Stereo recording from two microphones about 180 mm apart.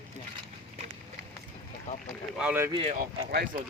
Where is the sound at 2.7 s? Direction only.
35° right (ahead or behind).